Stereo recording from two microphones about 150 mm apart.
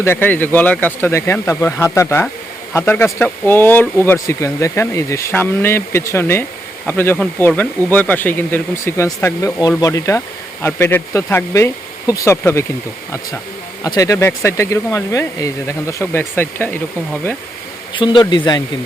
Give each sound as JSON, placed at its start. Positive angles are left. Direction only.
{"t": 0.0, "sound": "speech", "side_deg": 15}
{"t": 13.8, "sound": "speech", "side_deg": 20}
{"t": 17.9, "sound": "speech", "side_deg": 30}